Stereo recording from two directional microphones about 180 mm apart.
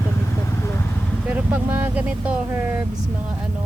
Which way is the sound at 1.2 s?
5° right (ahead or behind).